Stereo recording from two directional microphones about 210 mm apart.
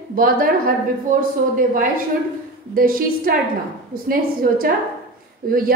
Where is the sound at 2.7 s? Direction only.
45° right (ahead or behind).